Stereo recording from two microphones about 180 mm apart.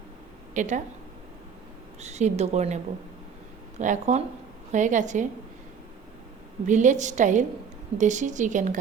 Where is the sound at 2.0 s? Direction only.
40° right (ahead or behind).